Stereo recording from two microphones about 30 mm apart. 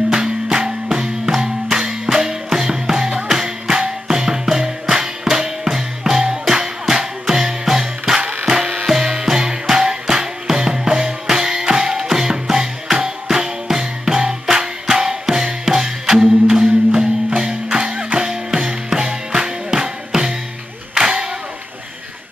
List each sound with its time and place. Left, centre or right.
0.1 s music: right
16.2 s music: right
21.1 s a sound: right